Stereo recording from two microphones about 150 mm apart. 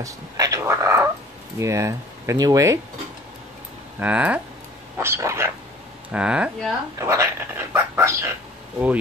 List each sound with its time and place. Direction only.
0.0 s a sound: 20° right (ahead or behind)
1.6 s speech: 20° right (ahead or behind)
4.0 s speech: 10° right (ahead or behind)
4.9 s dog: 15° right (ahead or behind)
6.0 s speech: 10° right (ahead or behind)
7.0 s speech: 20° right (ahead or behind)